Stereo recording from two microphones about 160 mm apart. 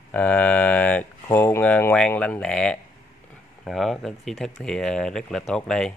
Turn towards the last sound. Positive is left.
turn(degrees=5)  # may be behind; listen again after turning